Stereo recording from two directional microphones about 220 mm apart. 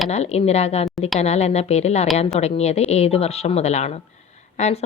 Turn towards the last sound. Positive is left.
turn(degrees=30)  # may be behind; listen again after turning